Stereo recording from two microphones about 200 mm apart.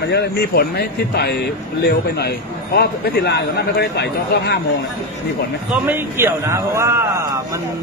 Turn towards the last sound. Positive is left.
turn(degrees=-15)  # may be behind; listen again after turning